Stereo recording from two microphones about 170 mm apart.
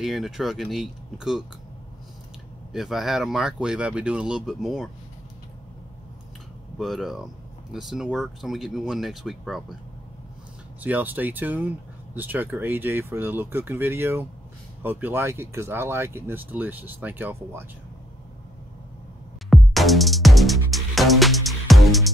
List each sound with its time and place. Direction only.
0.0 s speech: centre (ahead or behind)
2.7 s speech: centre (ahead or behind)
6.8 s speech: centre (ahead or behind)
10.8 s speech: 10° right (ahead or behind)
19.5 s music: centre (ahead or behind)